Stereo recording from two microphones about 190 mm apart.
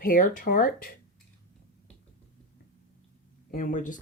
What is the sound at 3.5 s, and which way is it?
Speech, 45° left (ahead or behind).